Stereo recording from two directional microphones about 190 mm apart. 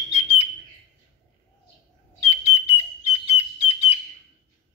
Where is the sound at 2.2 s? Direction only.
30° left (ahead or behind).